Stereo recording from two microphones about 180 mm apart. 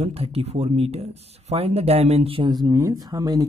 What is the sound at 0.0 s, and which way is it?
Speech, 35° right (ahead or behind).